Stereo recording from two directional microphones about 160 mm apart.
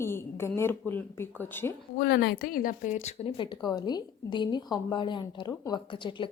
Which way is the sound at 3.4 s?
25° left (ahead or behind).